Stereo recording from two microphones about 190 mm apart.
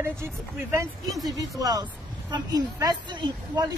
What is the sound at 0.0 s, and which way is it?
A woman's voice, 15° right (ahead or behind).